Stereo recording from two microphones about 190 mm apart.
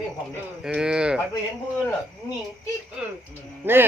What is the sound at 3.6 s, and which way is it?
Speech, 10° right (ahead or behind).